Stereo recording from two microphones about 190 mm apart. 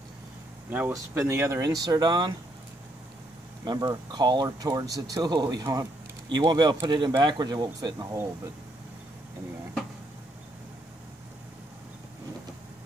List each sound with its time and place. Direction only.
0.7 s speech: 10° right (ahead or behind)
3.6 s speech: 20° right (ahead or behind)